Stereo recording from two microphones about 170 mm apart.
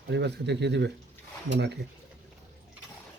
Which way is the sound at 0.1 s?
85° right.